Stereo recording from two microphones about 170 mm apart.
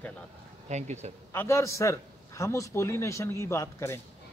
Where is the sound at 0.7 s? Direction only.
45° right (ahead or behind).